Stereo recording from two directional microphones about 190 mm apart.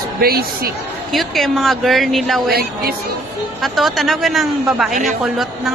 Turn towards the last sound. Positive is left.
turn(degrees=0)  # may be behind; listen again after turning